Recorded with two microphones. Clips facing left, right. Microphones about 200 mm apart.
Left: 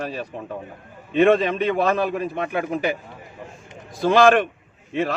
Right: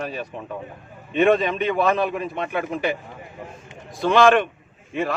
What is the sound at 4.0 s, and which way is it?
Speech, 40° left (ahead or behind).